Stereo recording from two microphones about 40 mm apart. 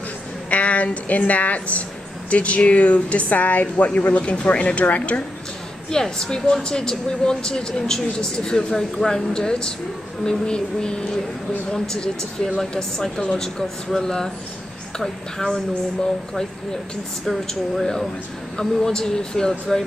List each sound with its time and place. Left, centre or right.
0.5 s a woman's voice: left
5.9 s speech: centre
18.6 s speech: centre